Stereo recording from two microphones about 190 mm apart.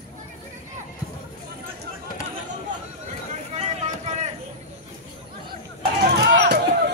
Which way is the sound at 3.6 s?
35° right (ahead or behind).